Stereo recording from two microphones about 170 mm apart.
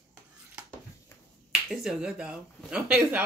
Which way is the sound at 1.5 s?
5° right (ahead or behind).